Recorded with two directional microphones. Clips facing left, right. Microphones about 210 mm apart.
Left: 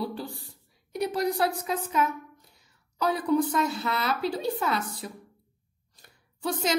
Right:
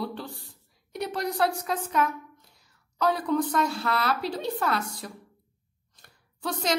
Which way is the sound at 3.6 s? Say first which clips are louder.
Right 1 dB; centre (ahead or behind).